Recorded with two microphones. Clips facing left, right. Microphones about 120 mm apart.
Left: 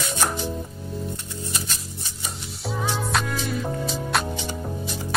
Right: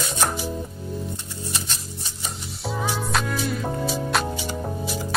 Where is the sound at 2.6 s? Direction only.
Centre (ahead or behind).